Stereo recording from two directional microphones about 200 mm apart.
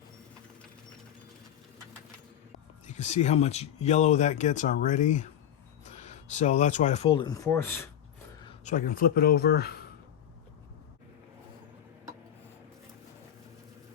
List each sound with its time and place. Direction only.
2.8 s speech: 35° left (ahead or behind); by 7.9 s 10° left (ahead or behind)
8.4 s speech: 40° left (ahead or behind)